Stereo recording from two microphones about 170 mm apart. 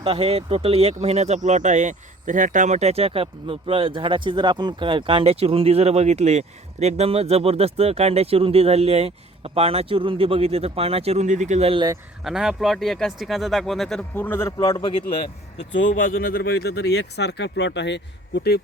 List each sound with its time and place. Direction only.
0.0 s speech: 35° right (ahead or behind)
12.2 s speech: 5° right (ahead or behind); by 14.9 s 25° left (ahead or behind)
15.5 s speech: 90° left
16.0 s speech: 55° left (ahead or behind); by 18.6 s 80° left